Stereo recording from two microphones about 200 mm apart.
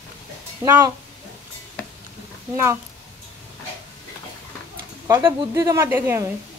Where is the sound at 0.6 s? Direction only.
15° right (ahead or behind).